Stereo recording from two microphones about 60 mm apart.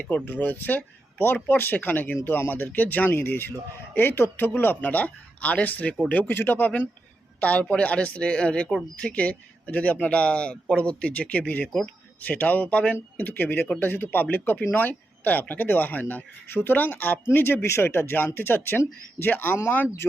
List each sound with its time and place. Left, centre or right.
0.3 s speech: left